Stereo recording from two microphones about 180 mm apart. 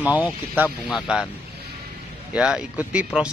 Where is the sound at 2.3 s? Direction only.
5° right (ahead or behind).